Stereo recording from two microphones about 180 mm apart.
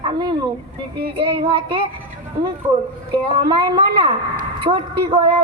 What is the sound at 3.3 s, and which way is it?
A woman's voice, 25° right (ahead or behind).